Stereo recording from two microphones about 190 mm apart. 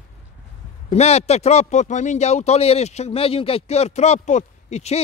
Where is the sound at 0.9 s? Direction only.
35° left (ahead or behind).